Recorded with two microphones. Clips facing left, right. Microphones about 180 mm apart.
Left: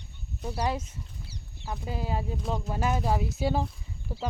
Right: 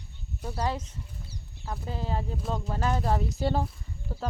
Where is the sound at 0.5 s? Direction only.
15° left (ahead or behind).